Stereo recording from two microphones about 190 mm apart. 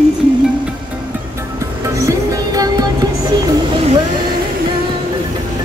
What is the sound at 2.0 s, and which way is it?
Music, 15° right (ahead or behind).